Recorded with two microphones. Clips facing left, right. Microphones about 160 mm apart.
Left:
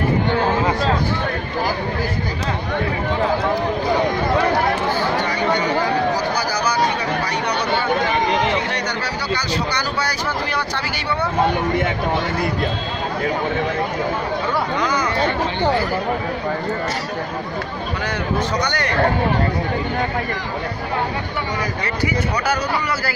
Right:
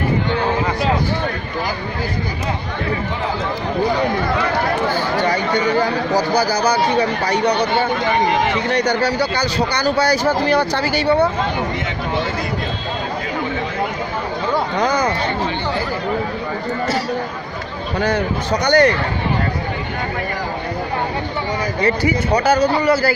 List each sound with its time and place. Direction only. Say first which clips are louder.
8.8 s speech: right 7 dB; 35° right (ahead or behind)
14.8 s speech: right 3 dB; 35° right (ahead or behind)
18.0 s speech: right 3 dB; 35° right (ahead or behind)
21.8 s speech: right 6 dB; 35° right (ahead or behind)